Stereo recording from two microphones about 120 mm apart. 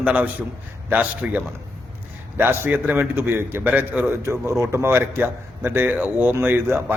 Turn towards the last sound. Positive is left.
turn(degrees=-20)  # may be behind; listen again after turning